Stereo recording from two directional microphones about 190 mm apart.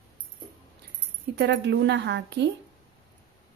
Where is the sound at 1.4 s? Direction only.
65° right (ahead or behind).